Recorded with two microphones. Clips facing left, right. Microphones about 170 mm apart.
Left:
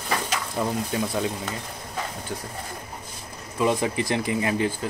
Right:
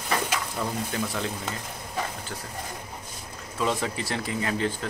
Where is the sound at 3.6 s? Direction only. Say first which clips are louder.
Left 5 dB; 15° left (ahead or behind).